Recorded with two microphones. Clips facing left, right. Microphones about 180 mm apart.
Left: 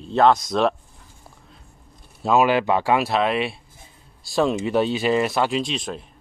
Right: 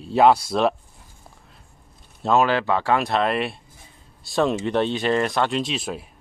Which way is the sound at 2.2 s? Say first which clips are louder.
Left 1 dB; 10° left (ahead or behind).